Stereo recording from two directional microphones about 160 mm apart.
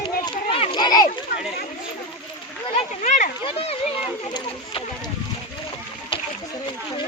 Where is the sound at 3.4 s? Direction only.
35° left (ahead or behind).